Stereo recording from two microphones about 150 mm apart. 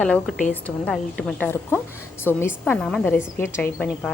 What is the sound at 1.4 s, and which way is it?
A woman's voice, 15° left (ahead or behind).